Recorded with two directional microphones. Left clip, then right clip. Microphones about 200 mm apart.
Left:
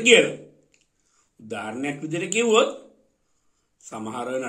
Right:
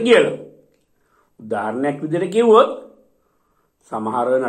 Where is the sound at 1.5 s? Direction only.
35° left (ahead or behind).